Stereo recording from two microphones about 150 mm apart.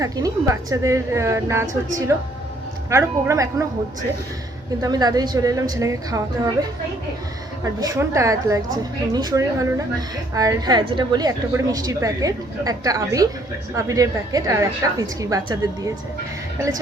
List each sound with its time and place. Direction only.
0.0 s a woman's voice: 20° right (ahead or behind)
2.9 s a woman's voice: 20° right (ahead or behind)
4.8 s a woman's voice: 25° right (ahead or behind)